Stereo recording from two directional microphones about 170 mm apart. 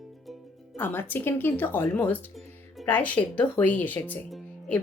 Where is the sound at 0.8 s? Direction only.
10° left (ahead or behind).